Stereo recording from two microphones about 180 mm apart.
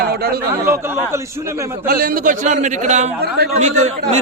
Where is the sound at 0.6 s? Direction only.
15° right (ahead or behind).